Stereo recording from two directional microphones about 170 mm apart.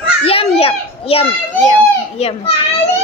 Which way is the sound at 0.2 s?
35° left (ahead or behind).